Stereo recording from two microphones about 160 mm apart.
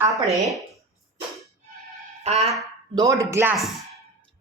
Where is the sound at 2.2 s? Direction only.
40° right (ahead or behind).